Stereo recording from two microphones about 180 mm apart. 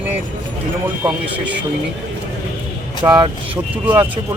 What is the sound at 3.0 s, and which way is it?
Speech, 25° right (ahead or behind).